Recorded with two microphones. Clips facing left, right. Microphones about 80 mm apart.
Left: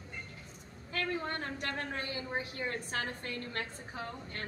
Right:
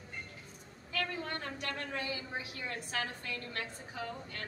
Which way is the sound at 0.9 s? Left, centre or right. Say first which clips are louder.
Left 2 dB; left.